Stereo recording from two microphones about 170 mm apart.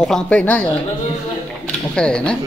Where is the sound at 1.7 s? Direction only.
5° left (ahead or behind).